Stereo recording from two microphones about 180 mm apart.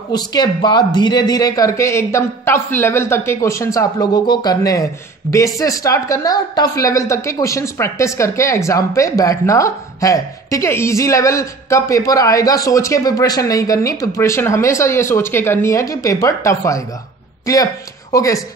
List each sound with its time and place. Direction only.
0.1 s a woman's voice: 25° left (ahead or behind)